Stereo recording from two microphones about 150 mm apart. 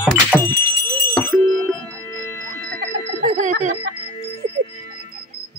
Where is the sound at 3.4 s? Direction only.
55° right (ahead or behind).